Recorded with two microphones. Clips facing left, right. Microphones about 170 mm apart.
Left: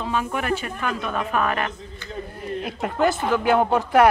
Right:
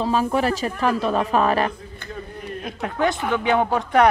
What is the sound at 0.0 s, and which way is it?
Speech, 35° right (ahead or behind).